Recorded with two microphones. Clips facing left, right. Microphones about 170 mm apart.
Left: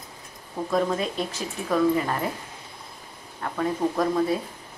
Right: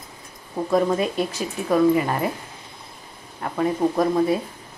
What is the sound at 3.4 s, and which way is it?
Speech, 15° right (ahead or behind).